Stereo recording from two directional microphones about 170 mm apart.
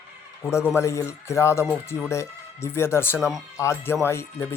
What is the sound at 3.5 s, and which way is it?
Speech, 15° left (ahead or behind).